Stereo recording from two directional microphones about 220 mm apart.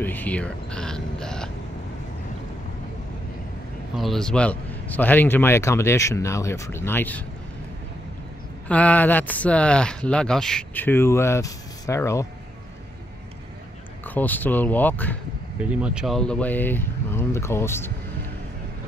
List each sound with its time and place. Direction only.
0.0 s a sound: 10° left (ahead or behind)
3.9 s speech: centre (ahead or behind)
8.6 s speech: 5° left (ahead or behind)
14.0 s speech: 10° left (ahead or behind)
15.7 s speech: 5° right (ahead or behind); by 17.9 s 10° left (ahead or behind)